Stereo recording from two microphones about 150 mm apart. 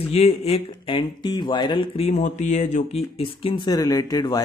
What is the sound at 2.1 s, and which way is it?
Speech, 50° left (ahead or behind).